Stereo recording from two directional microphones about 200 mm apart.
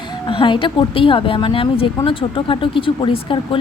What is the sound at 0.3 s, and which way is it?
A woman's voice, 25° left (ahead or behind).